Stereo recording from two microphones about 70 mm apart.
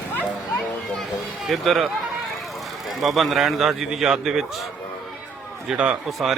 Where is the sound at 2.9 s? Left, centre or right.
Centre.